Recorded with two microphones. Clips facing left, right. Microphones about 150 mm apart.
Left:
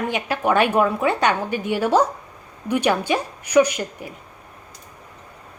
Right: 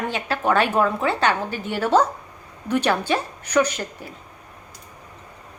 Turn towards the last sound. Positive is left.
turn(degrees=10)  # may be behind; listen again after turning